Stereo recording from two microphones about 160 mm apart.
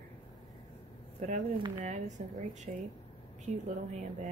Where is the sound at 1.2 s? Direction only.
45° right (ahead or behind).